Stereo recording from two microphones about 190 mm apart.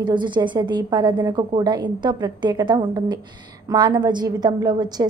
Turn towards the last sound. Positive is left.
turn(degrees=-20)  # may be behind; listen again after turning